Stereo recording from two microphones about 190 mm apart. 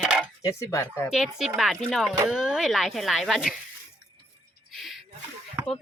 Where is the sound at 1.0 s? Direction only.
Centre (ahead or behind).